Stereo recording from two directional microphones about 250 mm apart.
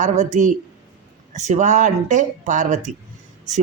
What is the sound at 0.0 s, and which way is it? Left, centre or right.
Speech, right.